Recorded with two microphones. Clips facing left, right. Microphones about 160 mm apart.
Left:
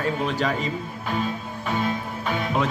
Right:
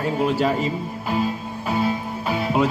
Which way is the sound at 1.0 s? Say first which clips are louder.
Right 3 dB; 5° right (ahead or behind).